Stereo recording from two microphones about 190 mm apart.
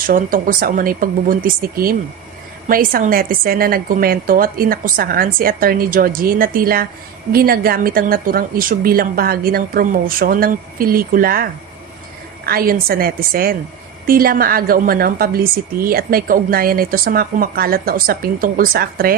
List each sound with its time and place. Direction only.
0.1 s a woman's voice: 45° right (ahead or behind)
12.5 s a woman's voice: 50° right (ahead or behind)